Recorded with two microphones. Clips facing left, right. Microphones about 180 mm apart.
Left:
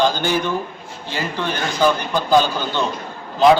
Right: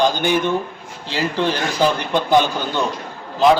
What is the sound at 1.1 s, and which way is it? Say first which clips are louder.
Speech: right 4 dB; 30° right (ahead or behind).